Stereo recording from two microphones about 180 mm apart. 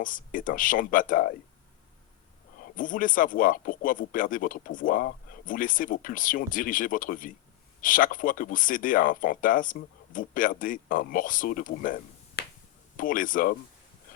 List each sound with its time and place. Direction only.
0.0 s speech: 50° left (ahead or behind)
2.6 s speech: 50° left (ahead or behind)
12.4 s finger snapping: 60° left (ahead or behind)
13.0 s speech: 50° left (ahead or behind)